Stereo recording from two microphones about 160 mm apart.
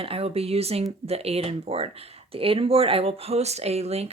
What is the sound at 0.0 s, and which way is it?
Speech, 35° right (ahead or behind).